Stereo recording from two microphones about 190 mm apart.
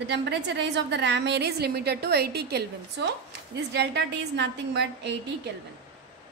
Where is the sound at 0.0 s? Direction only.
65° right (ahead or behind).